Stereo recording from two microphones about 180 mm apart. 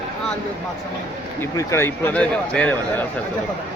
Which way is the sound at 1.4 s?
15° left (ahead or behind).